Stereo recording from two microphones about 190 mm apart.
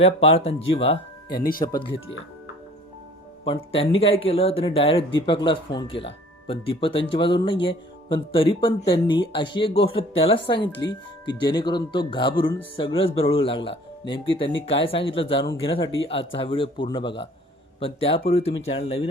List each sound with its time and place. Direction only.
0.0 s speech: 30° left (ahead or behind)
3.4 s speech: 30° left (ahead or behind)